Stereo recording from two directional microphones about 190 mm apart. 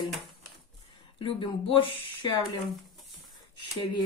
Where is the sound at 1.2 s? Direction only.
25° left (ahead or behind).